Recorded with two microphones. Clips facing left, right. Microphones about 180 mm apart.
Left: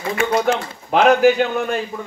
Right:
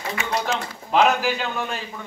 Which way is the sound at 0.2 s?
55° left (ahead or behind).